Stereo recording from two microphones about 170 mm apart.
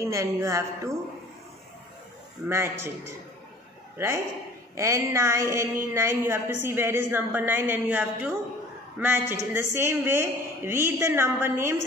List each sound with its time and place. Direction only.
0.0 s speech: 20° right (ahead or behind)
2.4 s a woman's voice: 15° right (ahead or behind)
4.7 s a woman's voice: 15° right (ahead or behind)